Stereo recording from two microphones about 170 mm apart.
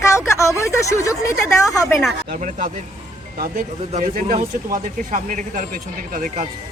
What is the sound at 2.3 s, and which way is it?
Speech, 45° right (ahead or behind).